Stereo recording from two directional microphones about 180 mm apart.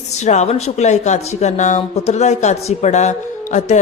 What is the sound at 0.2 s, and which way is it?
Speech, 40° left (ahead or behind).